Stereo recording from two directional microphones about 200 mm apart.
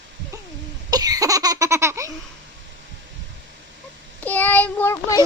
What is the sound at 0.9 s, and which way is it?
Baby laughter, 20° right (ahead or behind).